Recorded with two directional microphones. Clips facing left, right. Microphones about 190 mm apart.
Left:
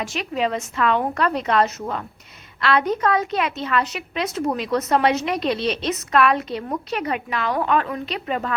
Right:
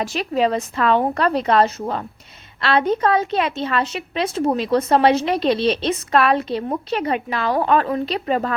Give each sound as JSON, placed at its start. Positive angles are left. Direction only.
{"t": 0.0, "sound": "a woman's voice", "side_deg": -35}